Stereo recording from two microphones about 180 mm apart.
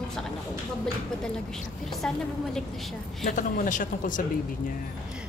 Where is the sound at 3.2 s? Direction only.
45° left (ahead or behind).